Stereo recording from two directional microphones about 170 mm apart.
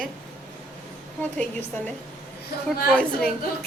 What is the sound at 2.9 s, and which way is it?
Speech, 5° left (ahead or behind).